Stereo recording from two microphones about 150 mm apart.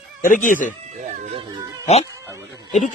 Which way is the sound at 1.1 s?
55° right (ahead or behind).